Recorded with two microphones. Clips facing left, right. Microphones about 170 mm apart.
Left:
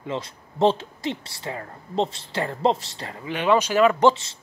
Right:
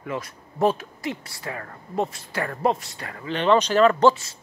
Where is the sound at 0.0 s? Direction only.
25° left (ahead or behind).